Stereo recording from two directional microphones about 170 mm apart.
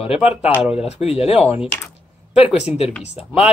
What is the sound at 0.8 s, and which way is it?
Speech, 35° left (ahead or behind).